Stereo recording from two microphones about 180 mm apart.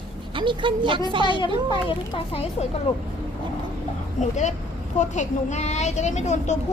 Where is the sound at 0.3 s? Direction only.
25° right (ahead or behind).